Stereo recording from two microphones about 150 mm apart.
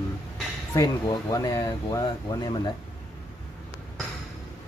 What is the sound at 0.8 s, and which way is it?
Speech, 25° left (ahead or behind).